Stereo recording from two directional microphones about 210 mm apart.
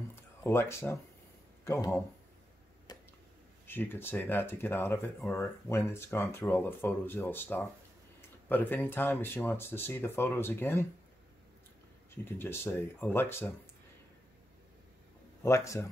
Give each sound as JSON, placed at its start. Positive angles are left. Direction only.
{"t": 0.1, "sound": "a sound", "side_deg": 10}
{"t": 1.6, "sound": "speech", "side_deg": 15}
{"t": 2.9, "sound": "a sound", "side_deg": 20}
{"t": 3.6, "sound": "speech", "side_deg": 10}
{"t": 12.3, "sound": "speech", "side_deg": 10}
{"t": 15.4, "sound": "speech", "side_deg": 15}